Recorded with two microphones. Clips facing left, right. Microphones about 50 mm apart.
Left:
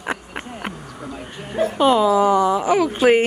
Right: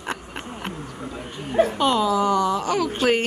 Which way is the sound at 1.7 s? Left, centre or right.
Centre.